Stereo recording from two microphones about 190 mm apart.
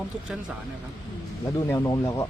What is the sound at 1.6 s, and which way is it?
Speech, 15° left (ahead or behind).